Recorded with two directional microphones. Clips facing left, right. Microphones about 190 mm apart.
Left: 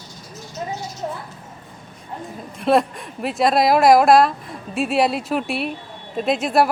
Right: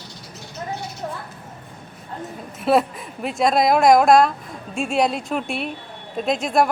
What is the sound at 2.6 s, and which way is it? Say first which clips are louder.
Speech: left 1 dB; 5° right (ahead or behind).